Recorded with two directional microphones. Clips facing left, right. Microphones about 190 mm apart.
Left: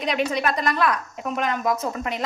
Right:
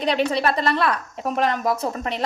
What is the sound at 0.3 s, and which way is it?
Speech, 30° right (ahead or behind).